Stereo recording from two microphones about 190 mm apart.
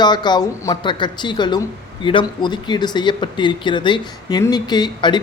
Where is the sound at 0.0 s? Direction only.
25° left (ahead or behind).